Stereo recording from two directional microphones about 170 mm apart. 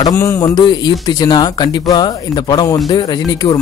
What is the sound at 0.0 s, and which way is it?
Speech, 15° left (ahead or behind).